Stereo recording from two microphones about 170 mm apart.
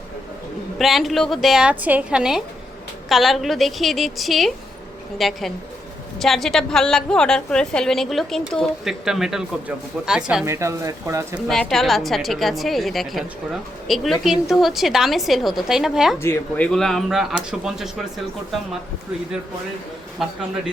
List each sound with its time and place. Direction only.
0.8 s a woman's voice: centre (ahead or behind)
10.4 s speech: 15° right (ahead or behind)
11.4 s a woman's voice: 5° left (ahead or behind)
16.1 s a woman's voice: 15° left (ahead or behind); by 18.0 s 5° right (ahead or behind)